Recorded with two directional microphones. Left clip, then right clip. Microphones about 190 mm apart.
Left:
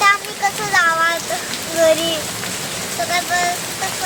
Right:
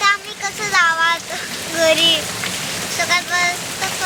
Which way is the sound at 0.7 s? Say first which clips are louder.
Right 1 dB; 10° left (ahead or behind).